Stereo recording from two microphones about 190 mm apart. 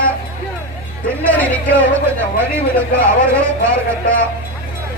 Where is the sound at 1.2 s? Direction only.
10° left (ahead or behind).